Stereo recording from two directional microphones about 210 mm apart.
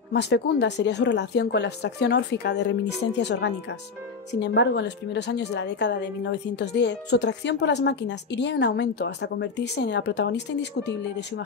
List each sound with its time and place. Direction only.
0.1 s a woman's voice: 55° left (ahead or behind)